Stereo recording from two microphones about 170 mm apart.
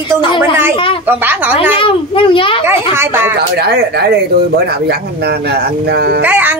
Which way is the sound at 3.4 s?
70° right (ahead or behind).